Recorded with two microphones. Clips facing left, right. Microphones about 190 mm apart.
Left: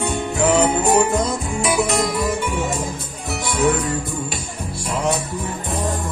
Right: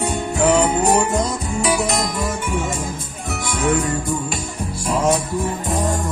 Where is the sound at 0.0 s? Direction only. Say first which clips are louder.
Right 1 dB; 40° right (ahead or behind).